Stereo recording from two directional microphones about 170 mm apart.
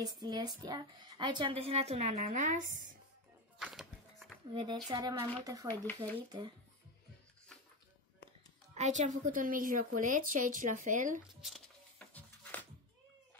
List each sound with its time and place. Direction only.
0.0 s speech: 25° right (ahead or behind); by 3.0 s 50° right (ahead or behind)
3.5 s music: centre (ahead or behind)
4.5 s speech: 30° right (ahead or behind)
8.7 s a woman's voice: 45° right (ahead or behind)
12.1 s music: 10° left (ahead or behind)